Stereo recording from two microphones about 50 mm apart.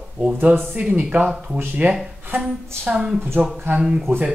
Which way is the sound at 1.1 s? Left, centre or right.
Right.